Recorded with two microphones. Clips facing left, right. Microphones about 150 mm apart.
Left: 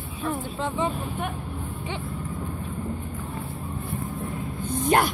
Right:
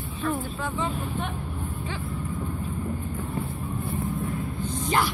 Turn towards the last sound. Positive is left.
turn(degrees=55)  # may be behind; listen again after turning